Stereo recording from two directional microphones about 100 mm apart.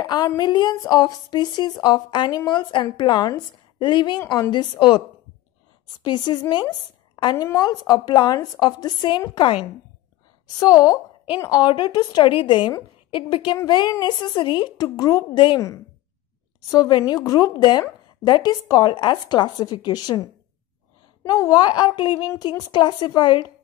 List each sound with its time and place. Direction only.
0.0 s a woman's voice: 45° left (ahead or behind)
6.0 s a woman's voice: 45° left (ahead or behind)
10.6 s a woman's voice: 40° left (ahead or behind)
12.3 s a woman's voice: 60° left (ahead or behind); by 15.2 s 40° left (ahead or behind)
15.3 s a woman's voice: 55° left (ahead or behind)
16.7 s a woman's voice: 35° left (ahead or behind)